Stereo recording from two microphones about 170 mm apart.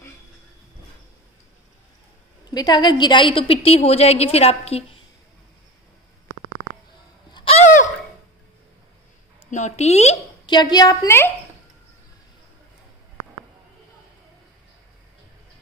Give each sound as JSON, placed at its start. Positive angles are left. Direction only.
{"t": 2.5, "sound": "a woman's voice", "side_deg": 25}
{"t": 7.3, "sound": "a sound", "side_deg": 35}
{"t": 9.5, "sound": "a woman's voice", "side_deg": 40}
{"t": 10.4, "sound": "a woman's voice", "side_deg": 25}